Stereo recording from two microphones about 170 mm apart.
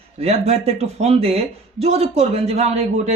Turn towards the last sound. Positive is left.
turn(degrees=-40)  # may be behind; listen again after turning